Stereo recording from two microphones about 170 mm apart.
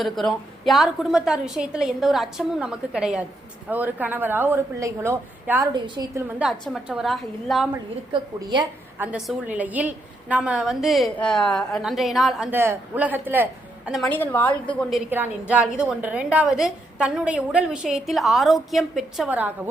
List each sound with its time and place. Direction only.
0.0 s a woman's voice: centre (ahead or behind)
5.7 s a woman's voice: 25° right (ahead or behind)
6.1 s a woman's voice: 10° right (ahead or behind)
8.1 s a woman's voice: 25° right (ahead or behind)
9.0 s a woman's voice: 5° right (ahead or behind)
12.5 s a woman's voice: 10° right (ahead or behind)
14.1 s a woman's voice: 10° left (ahead or behind)
15.1 s a woman's voice: 10° right (ahead or behind)